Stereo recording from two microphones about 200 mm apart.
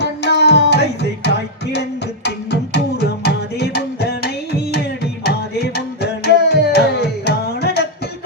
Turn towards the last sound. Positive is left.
turn(degrees=55)  # may be behind; listen again after turning